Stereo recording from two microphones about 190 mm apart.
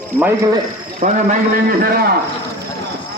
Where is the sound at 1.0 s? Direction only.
45° right (ahead or behind).